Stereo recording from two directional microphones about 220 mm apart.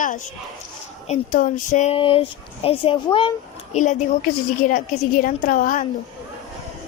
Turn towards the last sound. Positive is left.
turn(degrees=40)  # may be behind; listen again after turning